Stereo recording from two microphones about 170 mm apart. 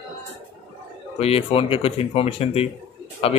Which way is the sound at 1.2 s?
35° left (ahead or behind).